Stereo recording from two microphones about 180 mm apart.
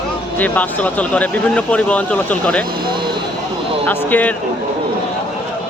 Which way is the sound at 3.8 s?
10° left (ahead or behind).